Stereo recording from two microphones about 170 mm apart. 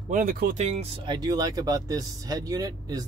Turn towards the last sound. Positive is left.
turn(degrees=-20)  # may be behind; listen again after turning